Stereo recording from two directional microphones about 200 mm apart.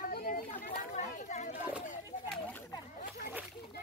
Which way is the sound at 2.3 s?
10° left (ahead or behind).